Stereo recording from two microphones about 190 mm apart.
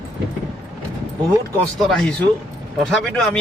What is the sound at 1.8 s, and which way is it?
Speech, 5° left (ahead or behind).